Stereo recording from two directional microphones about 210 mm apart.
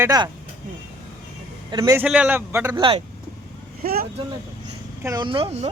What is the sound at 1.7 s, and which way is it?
Speech, 15° right (ahead or behind).